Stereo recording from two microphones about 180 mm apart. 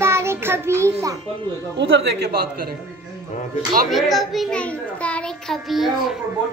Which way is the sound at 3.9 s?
Centre (ahead or behind).